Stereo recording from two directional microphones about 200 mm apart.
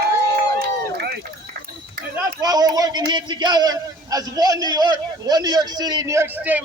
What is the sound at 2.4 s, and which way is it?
A man's voice, 20° right (ahead or behind).